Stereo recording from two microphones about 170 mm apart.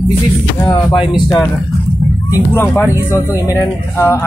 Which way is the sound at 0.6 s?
30° left (ahead or behind).